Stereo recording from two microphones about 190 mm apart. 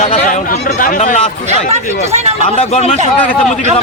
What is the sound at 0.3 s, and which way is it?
Speech, 45° left (ahead or behind).